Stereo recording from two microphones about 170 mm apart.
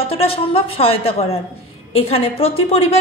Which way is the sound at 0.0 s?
35° left (ahead or behind).